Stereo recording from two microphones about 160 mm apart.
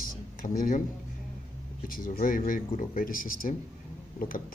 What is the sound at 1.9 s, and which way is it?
A man's voice, 65° left (ahead or behind).